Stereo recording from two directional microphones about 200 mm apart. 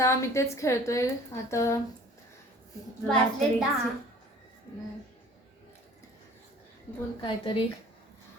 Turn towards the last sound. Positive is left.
turn(degrees=25)  # may be behind; listen again after turning